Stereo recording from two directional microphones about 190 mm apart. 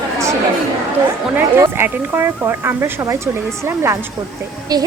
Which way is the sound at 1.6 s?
10° right (ahead or behind).